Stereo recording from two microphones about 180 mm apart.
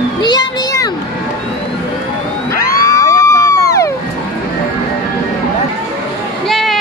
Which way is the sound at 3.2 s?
15° left (ahead or behind).